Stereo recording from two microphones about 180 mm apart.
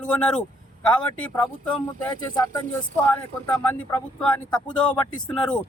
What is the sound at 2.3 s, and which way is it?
Speech, 20° left (ahead or behind).